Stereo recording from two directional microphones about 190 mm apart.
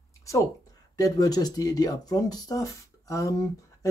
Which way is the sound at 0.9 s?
20° left (ahead or behind).